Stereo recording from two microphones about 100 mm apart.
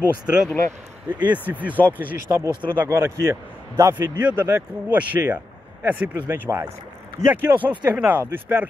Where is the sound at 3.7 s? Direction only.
35° right (ahead or behind).